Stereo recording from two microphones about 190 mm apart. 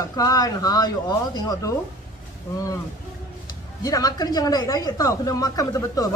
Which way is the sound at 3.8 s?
20° left (ahead or behind).